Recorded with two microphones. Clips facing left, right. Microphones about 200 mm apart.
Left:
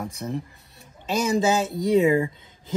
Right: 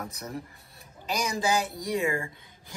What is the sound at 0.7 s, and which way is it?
Speech, 25° left (ahead or behind).